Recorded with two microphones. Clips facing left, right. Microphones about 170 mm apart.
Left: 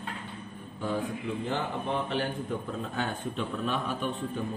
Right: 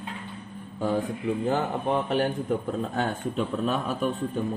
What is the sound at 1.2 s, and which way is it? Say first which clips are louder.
A man's voice: right 6 dB; 40° right (ahead or behind).